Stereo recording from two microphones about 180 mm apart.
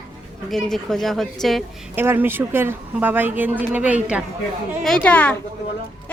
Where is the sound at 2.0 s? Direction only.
10° right (ahead or behind).